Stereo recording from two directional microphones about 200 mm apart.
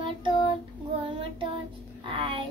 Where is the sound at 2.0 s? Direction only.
25° right (ahead or behind).